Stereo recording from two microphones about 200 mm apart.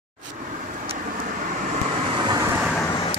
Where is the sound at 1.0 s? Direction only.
40° right (ahead or behind); by 2.5 s 20° right (ahead or behind).